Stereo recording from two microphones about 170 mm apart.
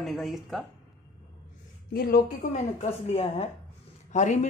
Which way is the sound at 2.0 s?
65° left (ahead or behind).